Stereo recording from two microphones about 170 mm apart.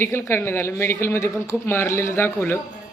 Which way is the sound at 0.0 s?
15° left (ahead or behind).